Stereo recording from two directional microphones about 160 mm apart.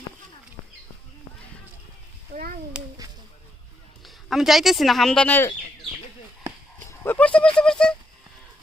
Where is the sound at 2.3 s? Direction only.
55° right (ahead or behind).